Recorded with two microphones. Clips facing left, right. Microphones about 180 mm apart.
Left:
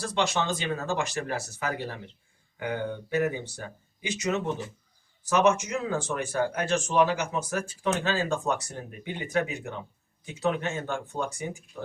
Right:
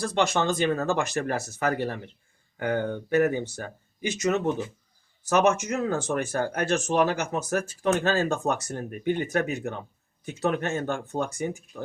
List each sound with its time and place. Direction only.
0.1 s speech: 45° right (ahead or behind)
4.0 s speech: 45° right (ahead or behind)